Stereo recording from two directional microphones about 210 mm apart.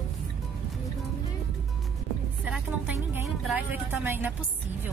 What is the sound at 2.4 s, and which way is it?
Music, 5° right (ahead or behind).